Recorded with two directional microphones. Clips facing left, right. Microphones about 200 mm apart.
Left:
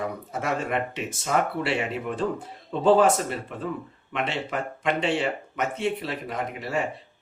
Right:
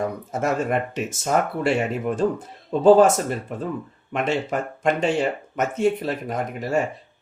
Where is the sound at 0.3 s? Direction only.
45° right (ahead or behind).